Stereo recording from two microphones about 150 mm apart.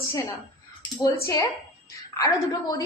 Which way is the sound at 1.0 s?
20° left (ahead or behind).